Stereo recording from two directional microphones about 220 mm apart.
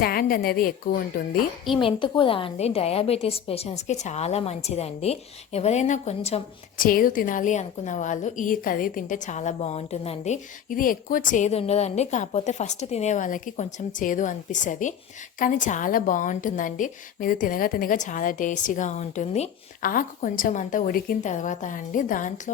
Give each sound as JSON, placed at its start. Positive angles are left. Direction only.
{"t": 0.0, "sound": "a woman's voice", "side_deg": 40}
{"t": 1.8, "sound": "a woman's voice", "side_deg": 25}
{"t": 6.8, "sound": "a woman's voice", "side_deg": 40}